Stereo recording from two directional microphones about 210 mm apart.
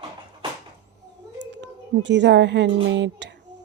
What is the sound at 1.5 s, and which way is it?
A woman's voice, 55° right (ahead or behind).